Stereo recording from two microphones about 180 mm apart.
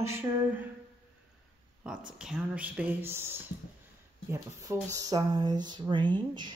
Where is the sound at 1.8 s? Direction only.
5° right (ahead or behind); by 6.6 s 25° right (ahead or behind).